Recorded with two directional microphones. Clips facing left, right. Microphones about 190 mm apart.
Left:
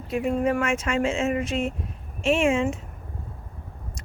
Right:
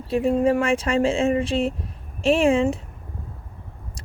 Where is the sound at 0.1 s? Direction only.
30° right (ahead or behind).